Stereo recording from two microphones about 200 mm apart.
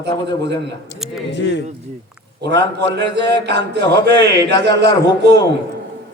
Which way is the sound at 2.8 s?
60° right (ahead or behind).